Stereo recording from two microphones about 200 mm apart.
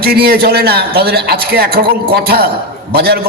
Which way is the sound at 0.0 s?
50° right (ahead or behind).